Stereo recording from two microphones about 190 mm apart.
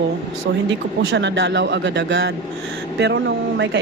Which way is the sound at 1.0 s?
70° right (ahead or behind).